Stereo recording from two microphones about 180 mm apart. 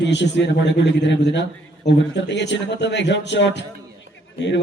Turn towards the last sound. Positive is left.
turn(degrees=80)